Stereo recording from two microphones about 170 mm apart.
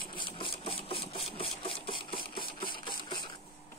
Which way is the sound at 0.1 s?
30° left (ahead or behind).